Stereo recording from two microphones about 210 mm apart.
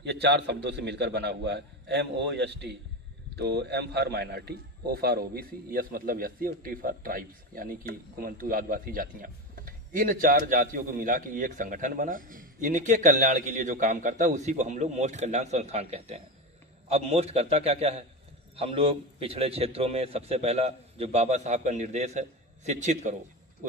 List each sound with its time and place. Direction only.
0.0 s a man's voice: 55° right (ahead or behind); by 23.1 s 35° right (ahead or behind)